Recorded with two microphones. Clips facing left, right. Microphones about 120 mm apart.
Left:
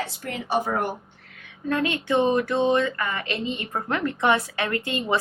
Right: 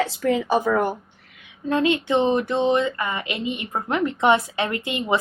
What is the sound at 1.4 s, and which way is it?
Speech, 20° right (ahead or behind).